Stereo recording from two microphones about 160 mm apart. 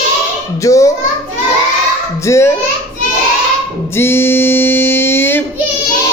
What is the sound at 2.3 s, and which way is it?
Speech, 15° left (ahead or behind).